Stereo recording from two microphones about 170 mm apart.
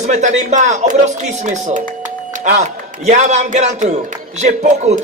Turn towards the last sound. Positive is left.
turn(degrees=-45)  # may be behind; listen again after turning